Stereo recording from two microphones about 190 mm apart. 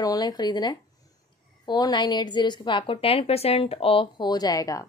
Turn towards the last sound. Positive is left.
turn(degrees=20)  # may be behind; listen again after turning